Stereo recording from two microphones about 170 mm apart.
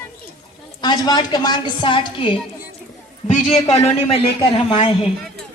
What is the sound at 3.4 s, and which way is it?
A woman's voice, 35° left (ahead or behind).